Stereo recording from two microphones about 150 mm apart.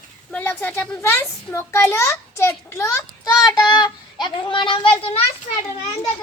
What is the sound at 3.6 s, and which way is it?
Child singing, 30° left (ahead or behind).